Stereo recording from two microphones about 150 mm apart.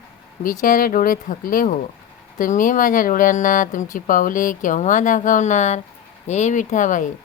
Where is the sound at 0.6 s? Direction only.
65° left (ahead or behind).